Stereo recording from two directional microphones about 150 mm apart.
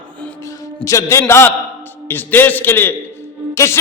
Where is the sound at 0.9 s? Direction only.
20° left (ahead or behind).